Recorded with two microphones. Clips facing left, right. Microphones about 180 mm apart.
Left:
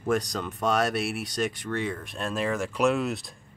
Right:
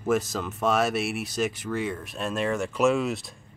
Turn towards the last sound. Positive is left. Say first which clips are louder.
# right 2 dB
turn(degrees=0)  # may be behind; listen again after turning